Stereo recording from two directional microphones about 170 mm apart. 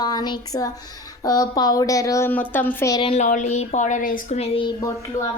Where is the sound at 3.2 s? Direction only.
45° left (ahead or behind).